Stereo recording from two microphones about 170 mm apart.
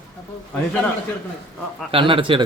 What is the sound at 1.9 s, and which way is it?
Speech, 30° right (ahead or behind).